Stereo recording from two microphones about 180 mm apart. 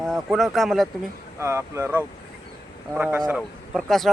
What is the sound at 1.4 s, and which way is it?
Speech, 15° right (ahead or behind).